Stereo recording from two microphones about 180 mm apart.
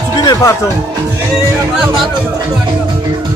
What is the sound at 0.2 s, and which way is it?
Music, 20° left (ahead or behind).